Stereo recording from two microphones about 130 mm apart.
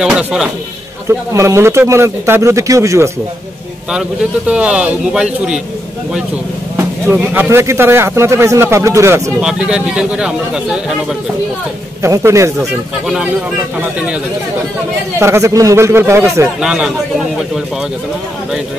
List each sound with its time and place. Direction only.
0.0 s a man's voice: 5° right (ahead or behind)
1.0 s speech: 20° right (ahead or behind)
4.5 s speech: 10° right (ahead or behind)
7.1 s speech: 20° right (ahead or behind)
9.4 s speech: 5° right (ahead or behind)
12.0 s speech: 20° right (ahead or behind)
13.0 s a man's voice: 5° right (ahead or behind)
15.1 s speech: 20° right (ahead or behind)
16.6 s a man's voice: 5° right (ahead or behind)